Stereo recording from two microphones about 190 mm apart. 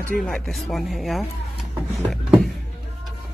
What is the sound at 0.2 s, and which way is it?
Speech, centre (ahead or behind).